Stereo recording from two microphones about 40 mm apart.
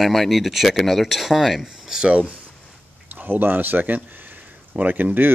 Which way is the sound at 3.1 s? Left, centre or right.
Right.